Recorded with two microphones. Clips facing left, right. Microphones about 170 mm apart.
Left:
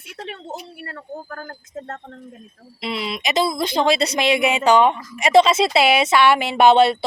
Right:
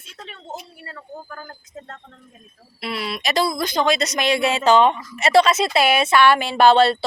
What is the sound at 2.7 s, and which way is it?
Speech, 20° left (ahead or behind).